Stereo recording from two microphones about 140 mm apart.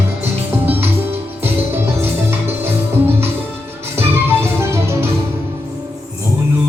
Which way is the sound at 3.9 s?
15° right (ahead or behind).